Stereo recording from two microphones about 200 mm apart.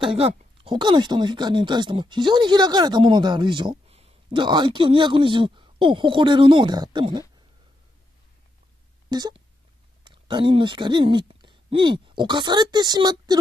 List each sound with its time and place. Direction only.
0.0 s speech: 30° right (ahead or behind)
9.1 s speech: 20° right (ahead or behind)